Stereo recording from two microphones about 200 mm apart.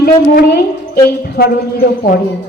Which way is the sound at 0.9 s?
50° left (ahead or behind).